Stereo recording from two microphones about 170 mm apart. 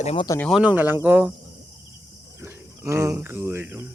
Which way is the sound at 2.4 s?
15° right (ahead or behind).